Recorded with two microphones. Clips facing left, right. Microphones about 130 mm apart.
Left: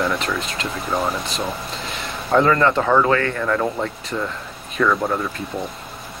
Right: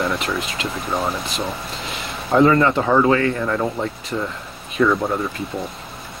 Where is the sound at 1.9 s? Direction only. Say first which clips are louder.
Left 1 dB; 10° right (ahead or behind).